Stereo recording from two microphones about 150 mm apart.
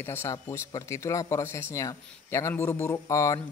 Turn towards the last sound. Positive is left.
turn(degrees=20)  # may be behind; listen again after turning